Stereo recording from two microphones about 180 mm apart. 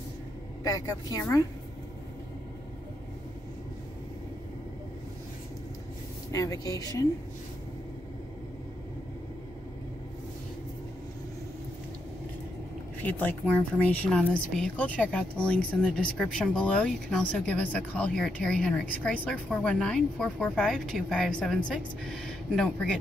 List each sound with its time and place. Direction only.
0.7 s speech: 20° left (ahead or behind)
6.3 s speech: 20° left (ahead or behind)
13.0 s a woman's voice: 10° left (ahead or behind)